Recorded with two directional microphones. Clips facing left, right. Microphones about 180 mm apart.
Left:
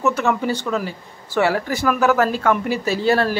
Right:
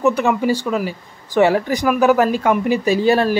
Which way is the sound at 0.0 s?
15° right (ahead or behind).